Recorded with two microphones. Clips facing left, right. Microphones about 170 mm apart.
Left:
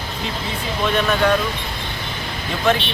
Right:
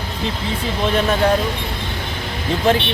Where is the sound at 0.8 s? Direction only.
30° right (ahead or behind).